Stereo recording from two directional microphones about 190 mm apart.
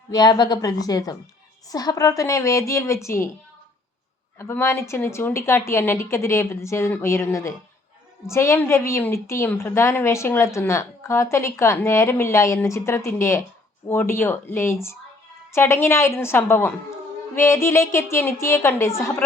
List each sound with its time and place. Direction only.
0.1 s a woman's voice: 20° left (ahead or behind)
4.4 s a woman's voice: 15° left (ahead or behind)